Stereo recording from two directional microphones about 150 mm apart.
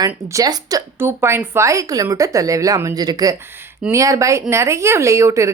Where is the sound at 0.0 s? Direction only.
25° right (ahead or behind).